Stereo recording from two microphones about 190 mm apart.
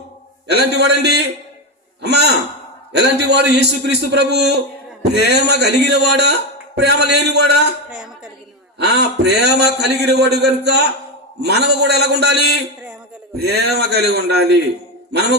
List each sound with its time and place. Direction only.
0.4 s a man's voice: 60° right (ahead or behind)
7.9 s a sound: 5° right (ahead or behind)
8.8 s a man's voice: 60° right (ahead or behind)